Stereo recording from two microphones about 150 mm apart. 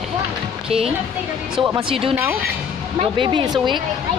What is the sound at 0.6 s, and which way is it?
Speech, 40° right (ahead or behind).